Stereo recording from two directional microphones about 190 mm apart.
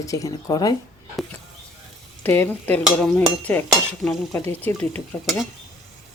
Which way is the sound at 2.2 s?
10° left (ahead or behind).